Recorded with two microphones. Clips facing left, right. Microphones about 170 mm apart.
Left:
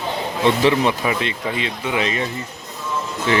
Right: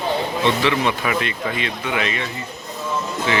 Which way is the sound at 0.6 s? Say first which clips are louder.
Left 3 dB; 30° left (ahead or behind).